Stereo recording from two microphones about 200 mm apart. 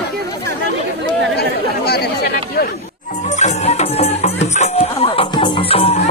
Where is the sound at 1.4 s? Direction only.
55° left (ahead or behind).